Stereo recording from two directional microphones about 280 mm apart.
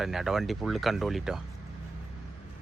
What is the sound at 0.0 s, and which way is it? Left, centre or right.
Speech, centre.